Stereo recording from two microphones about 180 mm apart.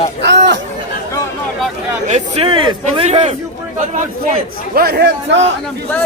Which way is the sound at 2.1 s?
40° right (ahead or behind).